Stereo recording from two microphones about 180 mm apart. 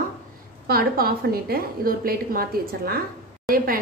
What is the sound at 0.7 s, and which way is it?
A woman's voice, 55° right (ahead or behind).